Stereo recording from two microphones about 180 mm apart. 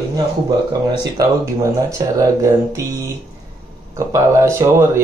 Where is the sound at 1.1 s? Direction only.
15° right (ahead or behind).